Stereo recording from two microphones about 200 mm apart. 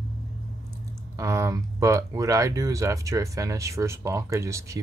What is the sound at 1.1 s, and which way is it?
Speech, 15° right (ahead or behind).